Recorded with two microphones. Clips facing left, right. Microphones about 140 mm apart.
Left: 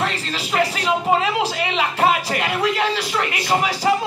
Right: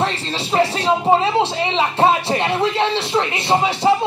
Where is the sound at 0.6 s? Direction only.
30° right (ahead or behind).